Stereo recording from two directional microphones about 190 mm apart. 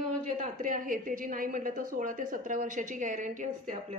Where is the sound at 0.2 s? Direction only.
45° right (ahead or behind).